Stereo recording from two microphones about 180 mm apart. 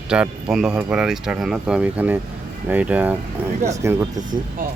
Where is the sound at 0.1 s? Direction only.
5° right (ahead or behind).